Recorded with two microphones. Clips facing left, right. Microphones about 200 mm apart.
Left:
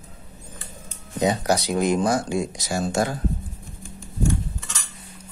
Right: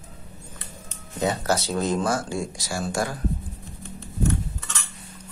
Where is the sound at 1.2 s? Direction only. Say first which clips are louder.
Left 3 dB; 15° left (ahead or behind).